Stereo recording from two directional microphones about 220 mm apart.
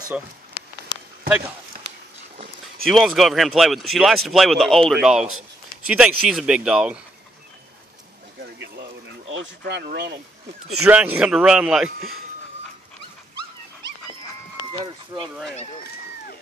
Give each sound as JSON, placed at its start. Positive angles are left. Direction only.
{"t": 0.1, "sound": "speech", "side_deg": -5}
{"t": 2.8, "sound": "speech", "side_deg": 0}
{"t": 9.3, "sound": "speech", "side_deg": -55}
{"t": 10.9, "sound": "speech", "side_deg": -5}